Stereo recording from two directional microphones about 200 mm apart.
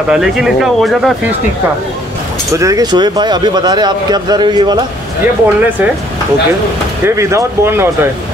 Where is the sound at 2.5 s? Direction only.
15° right (ahead or behind).